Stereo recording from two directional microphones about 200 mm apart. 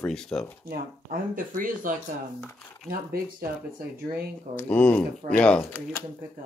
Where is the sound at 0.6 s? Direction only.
45° right (ahead or behind).